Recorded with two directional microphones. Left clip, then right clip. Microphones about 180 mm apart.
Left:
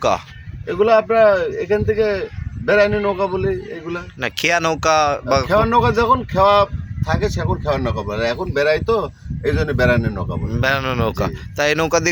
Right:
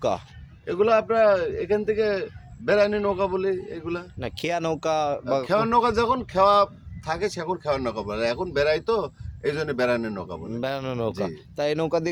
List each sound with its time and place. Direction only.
0.7 s a man's voice: 15° right (ahead or behind)
4.2 s speech: 5° right (ahead or behind)
5.5 s a man's voice: 20° right (ahead or behind)
10.5 s speech: 5° right (ahead or behind)